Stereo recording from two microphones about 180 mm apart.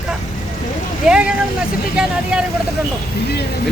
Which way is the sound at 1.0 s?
5° right (ahead or behind).